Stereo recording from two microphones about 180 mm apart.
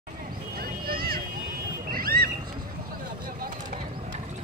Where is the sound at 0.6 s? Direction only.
55° right (ahead or behind).